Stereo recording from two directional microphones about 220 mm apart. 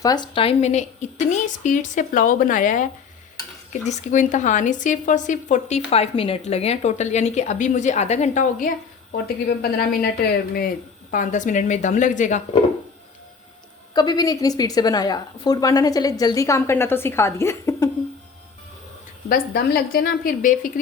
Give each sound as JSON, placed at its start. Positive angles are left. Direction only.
{"t": 0.0, "sound": "a woman's voice", "side_deg": 20}
{"t": 9.2, "sound": "a woman's voice", "side_deg": 45}
{"t": 11.1, "sound": "a woman's voice", "side_deg": 35}
{"t": 13.9, "sound": "a woman's voice", "side_deg": 20}
{"t": 19.3, "sound": "a woman's voice", "side_deg": 45}